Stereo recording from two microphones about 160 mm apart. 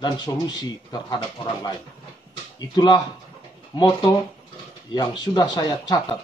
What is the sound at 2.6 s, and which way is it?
Speech, 25° left (ahead or behind).